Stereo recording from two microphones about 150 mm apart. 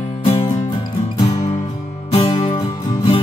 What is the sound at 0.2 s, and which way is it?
Music, 45° left (ahead or behind).